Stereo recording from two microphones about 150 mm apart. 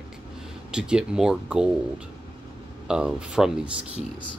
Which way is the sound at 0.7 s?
5° right (ahead or behind).